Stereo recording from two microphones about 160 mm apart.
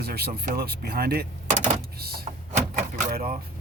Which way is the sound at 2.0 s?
75° right (ahead or behind).